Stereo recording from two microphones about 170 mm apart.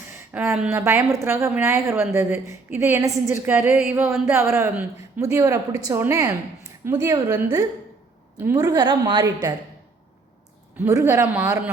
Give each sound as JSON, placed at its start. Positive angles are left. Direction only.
{"t": 0.1, "sound": "a woman's voice", "side_deg": -15}
{"t": 10.8, "sound": "speech", "side_deg": -15}